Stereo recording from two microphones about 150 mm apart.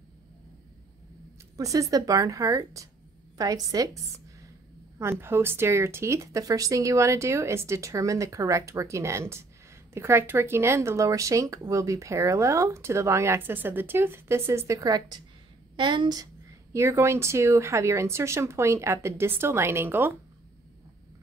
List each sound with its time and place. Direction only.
1.6 s a woman's voice: 20° right (ahead or behind)